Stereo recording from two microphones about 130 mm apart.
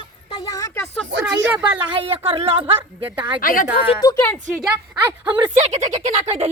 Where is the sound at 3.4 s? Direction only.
90° left.